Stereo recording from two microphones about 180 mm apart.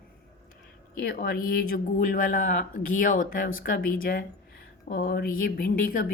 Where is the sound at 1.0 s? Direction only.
55° left (ahead or behind).